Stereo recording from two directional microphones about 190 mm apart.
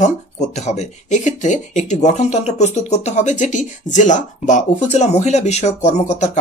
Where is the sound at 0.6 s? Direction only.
35° left (ahead or behind).